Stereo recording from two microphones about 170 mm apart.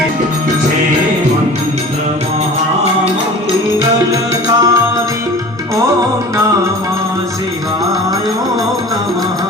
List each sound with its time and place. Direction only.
3.8 s music: 20° right (ahead or behind)